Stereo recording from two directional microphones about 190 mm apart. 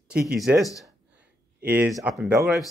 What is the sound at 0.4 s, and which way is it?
A man's voice, centre (ahead or behind).